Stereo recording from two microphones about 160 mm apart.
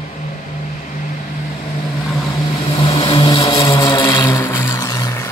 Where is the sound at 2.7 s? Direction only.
35° left (ahead or behind).